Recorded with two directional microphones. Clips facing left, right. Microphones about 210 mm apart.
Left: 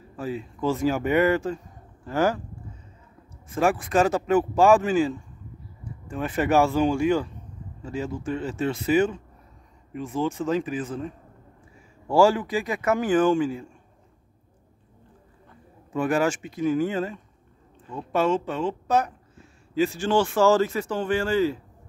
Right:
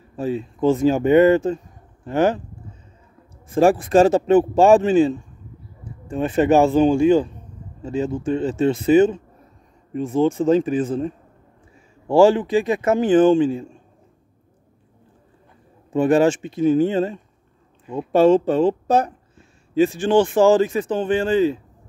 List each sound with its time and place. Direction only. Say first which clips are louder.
0.1 s speech: right 7 dB; 25° right (ahead or behind)
3.4 s speech: right 7 dB; 30° right (ahead or behind)
12.1 s speech: right 5 dB; 20° right (ahead or behind)
15.9 s speech: right 7 dB; 25° right (ahead or behind)
19.7 s speech: right 6 dB; 20° right (ahead or behind)